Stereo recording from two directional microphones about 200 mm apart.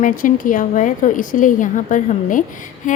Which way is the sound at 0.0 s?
40° left (ahead or behind).